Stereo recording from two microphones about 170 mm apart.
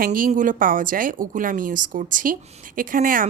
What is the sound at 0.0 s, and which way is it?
Speech, 55° right (ahead or behind).